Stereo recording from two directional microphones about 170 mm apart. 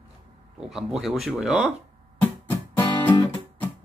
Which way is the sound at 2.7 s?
10° left (ahead or behind).